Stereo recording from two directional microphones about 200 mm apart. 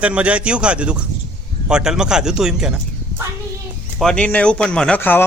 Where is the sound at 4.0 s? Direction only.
5° left (ahead or behind).